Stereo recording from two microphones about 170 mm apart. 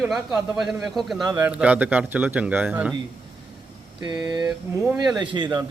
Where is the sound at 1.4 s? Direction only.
10° right (ahead or behind).